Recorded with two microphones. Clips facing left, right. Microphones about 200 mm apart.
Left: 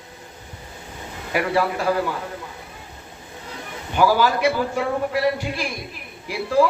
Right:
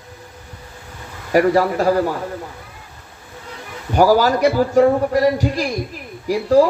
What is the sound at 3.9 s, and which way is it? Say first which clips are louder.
A man's voice: right 5 dB; 40° right (ahead or behind).